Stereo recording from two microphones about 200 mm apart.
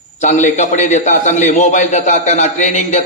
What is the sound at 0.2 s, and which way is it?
A man's voice, 35° left (ahead or behind).